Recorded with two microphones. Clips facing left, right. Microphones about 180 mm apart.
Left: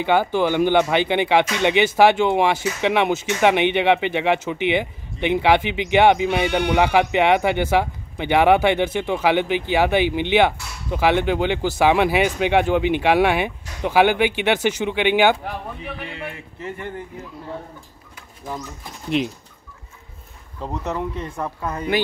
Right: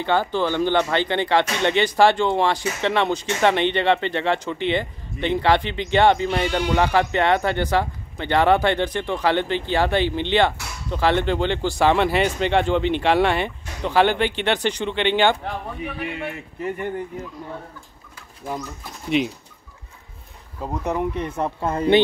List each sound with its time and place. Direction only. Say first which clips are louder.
0.0 s speech: left 3 dB; 10° left (ahead or behind)
19.0 s speech: right 1 dB; centre (ahead or behind)
20.6 s speech: right 2 dB; 10° right (ahead or behind); by 22.0 s 30° right (ahead or behind)